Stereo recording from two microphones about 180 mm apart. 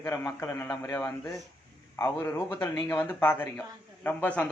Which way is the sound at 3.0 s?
10° left (ahead or behind).